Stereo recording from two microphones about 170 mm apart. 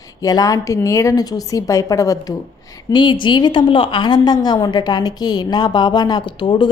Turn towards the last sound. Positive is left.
turn(degrees=25)  # may be behind; listen again after turning